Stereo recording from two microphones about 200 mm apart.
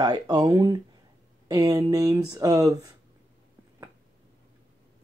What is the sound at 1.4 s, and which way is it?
Speech, 20° right (ahead or behind).